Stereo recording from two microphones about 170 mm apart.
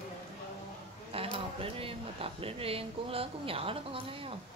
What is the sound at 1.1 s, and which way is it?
Speech, 35° right (ahead or behind).